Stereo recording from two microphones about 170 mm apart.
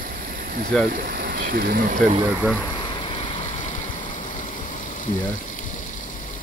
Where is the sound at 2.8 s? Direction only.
30° left (ahead or behind).